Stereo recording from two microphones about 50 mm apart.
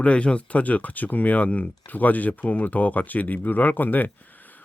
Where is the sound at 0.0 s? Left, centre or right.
Left.